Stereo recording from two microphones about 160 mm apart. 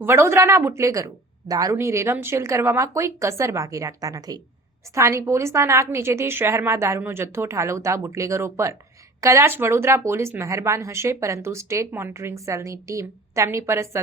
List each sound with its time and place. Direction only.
0.0 s speech: 15° right (ahead or behind)